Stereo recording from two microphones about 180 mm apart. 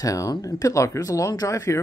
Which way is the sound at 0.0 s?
20° left (ahead or behind).